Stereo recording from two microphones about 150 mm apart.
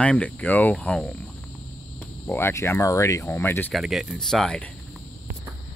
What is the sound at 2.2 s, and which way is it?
Speech, 15° left (ahead or behind).